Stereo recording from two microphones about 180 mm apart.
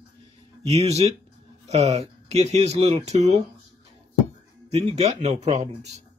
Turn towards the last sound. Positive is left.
turn(degrees=-35)  # may be behind; listen again after turning